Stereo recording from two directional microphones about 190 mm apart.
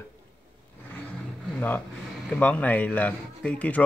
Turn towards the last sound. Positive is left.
turn(degrees=5)  # may be behind; listen again after turning